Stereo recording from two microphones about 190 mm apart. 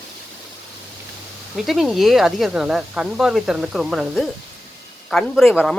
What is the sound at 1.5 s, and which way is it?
Speech, centre (ahead or behind).